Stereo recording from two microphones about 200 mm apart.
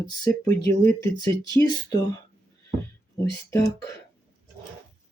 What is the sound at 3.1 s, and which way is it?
Speech, 15° left (ahead or behind).